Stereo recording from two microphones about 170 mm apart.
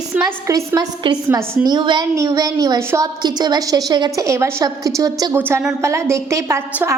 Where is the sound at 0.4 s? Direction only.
20° right (ahead or behind).